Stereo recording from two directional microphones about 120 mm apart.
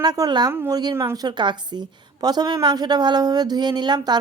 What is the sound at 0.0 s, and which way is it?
A woman's voice, 35° right (ahead or behind).